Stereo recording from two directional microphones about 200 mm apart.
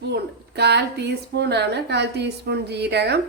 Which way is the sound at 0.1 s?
55° right (ahead or behind).